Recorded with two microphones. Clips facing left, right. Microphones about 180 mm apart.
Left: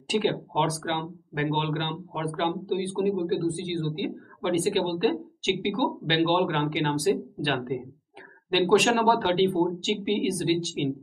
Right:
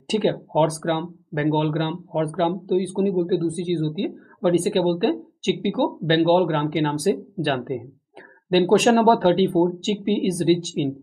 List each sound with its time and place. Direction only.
0.1 s speech: 40° right (ahead or behind)